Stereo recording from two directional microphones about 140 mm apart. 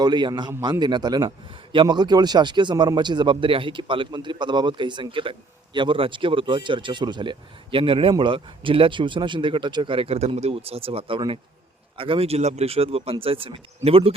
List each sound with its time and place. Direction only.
0.0 s speech: 30° right (ahead or behind)